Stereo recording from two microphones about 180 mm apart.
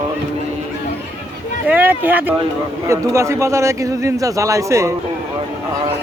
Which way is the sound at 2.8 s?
15° right (ahead or behind).